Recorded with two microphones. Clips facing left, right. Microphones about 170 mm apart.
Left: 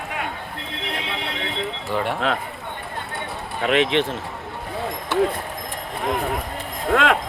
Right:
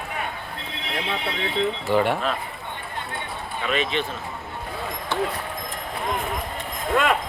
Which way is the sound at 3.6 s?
75° left (ahead or behind).